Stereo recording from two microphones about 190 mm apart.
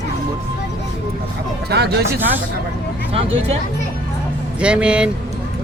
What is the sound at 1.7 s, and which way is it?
Speech, 60° right (ahead or behind).